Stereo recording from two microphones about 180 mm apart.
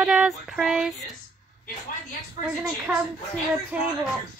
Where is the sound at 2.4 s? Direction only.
45° left (ahead or behind).